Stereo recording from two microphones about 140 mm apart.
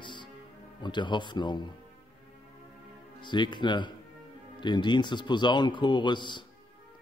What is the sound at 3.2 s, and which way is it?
A man's voice, 35° left (ahead or behind).